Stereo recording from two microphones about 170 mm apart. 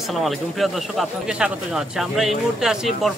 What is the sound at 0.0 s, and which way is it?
Speech, centre (ahead or behind).